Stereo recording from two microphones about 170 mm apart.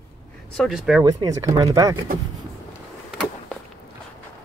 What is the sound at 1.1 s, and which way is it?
Speech, 20° right (ahead or behind).